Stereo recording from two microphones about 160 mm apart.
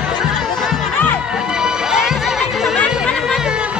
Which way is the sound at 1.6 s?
5° right (ahead or behind).